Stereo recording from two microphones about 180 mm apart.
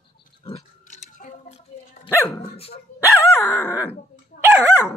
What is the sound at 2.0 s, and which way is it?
Dog, 15° left (ahead or behind).